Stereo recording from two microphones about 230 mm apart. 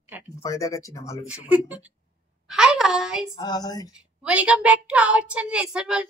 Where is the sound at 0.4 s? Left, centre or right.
Centre.